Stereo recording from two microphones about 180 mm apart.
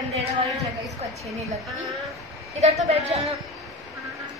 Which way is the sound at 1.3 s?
20° right (ahead or behind).